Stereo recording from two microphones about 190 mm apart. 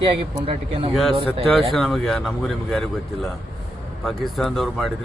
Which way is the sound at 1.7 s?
Centre (ahead or behind).